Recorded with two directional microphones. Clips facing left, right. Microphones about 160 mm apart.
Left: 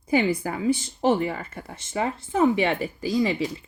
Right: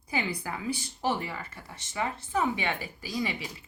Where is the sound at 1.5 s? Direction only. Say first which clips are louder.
Left 10 dB; 50° left (ahead or behind).